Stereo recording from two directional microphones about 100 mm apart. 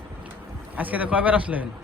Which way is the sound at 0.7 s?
15° right (ahead or behind).